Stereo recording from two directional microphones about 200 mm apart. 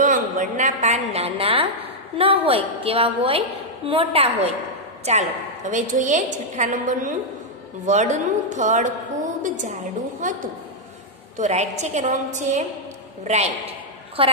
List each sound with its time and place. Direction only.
0.0 s a woman's voice: 40° right (ahead or behind)